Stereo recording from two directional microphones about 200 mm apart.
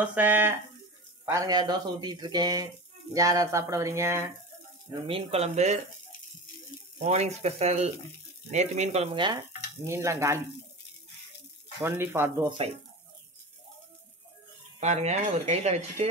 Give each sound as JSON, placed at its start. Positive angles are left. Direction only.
{"t": 0.0, "sound": "speech", "side_deg": -10}
{"t": 5.0, "sound": "speech", "side_deg": -30}
{"t": 7.0, "sound": "speech", "side_deg": -35}
{"t": 11.8, "sound": "speech", "side_deg": -10}
{"t": 12.4, "sound": "speech", "side_deg": -30}
{"t": 14.8, "sound": "speech", "side_deg": -35}